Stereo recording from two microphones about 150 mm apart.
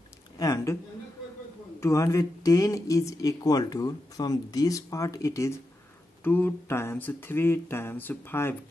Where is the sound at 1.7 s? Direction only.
20° left (ahead or behind).